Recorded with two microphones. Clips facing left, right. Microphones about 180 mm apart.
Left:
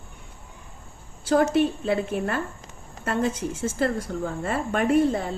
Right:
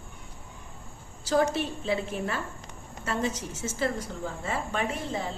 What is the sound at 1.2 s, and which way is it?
A woman's voice, 50° left (ahead or behind).